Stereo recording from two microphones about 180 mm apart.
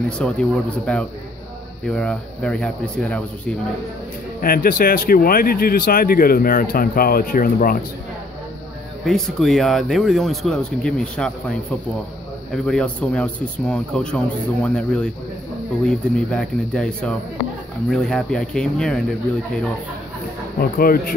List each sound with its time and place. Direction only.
0.2 s speech: 5° left (ahead or behind)
4.4 s speech: 55° left (ahead or behind)
9.0 s speech: centre (ahead or behind)
12.6 s speech: 5° left (ahead or behind)
20.5 s speech: 55° left (ahead or behind)